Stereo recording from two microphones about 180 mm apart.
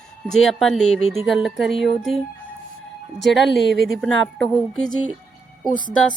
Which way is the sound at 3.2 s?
Centre (ahead or behind).